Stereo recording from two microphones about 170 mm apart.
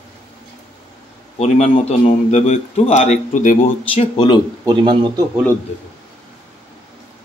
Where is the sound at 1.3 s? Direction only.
40° left (ahead or behind).